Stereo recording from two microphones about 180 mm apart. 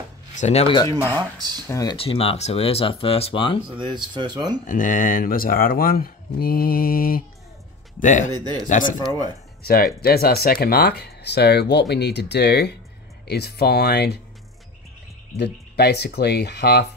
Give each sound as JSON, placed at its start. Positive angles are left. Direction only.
{"t": 0.4, "sound": "speech", "side_deg": 35}
{"t": 2.0, "sound": "speech", "side_deg": 30}
{"t": 3.7, "sound": "speech", "side_deg": -25}
{"t": 4.6, "sound": "speech", "side_deg": 45}
{"t": 9.6, "sound": "speech", "side_deg": 60}
{"t": 15.3, "sound": "speech", "side_deg": 65}